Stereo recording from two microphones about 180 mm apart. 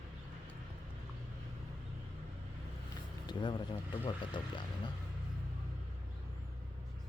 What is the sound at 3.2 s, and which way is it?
Speech, 25° left (ahead or behind).